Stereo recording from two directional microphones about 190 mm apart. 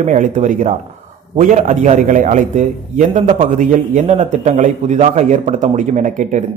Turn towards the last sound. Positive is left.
turn(degrees=-40)  # may be behind; listen again after turning